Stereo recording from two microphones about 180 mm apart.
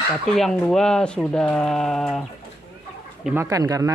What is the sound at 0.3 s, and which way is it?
Speech, centre (ahead or behind).